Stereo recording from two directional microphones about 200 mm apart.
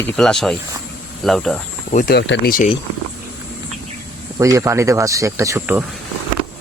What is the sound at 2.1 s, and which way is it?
Speech, 60° left (ahead or behind).